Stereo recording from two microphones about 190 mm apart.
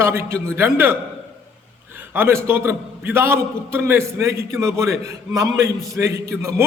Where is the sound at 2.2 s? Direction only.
15° right (ahead or behind).